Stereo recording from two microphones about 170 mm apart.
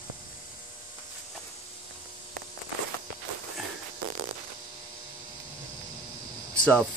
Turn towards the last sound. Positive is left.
turn(degrees=5)  # may be behind; listen again after turning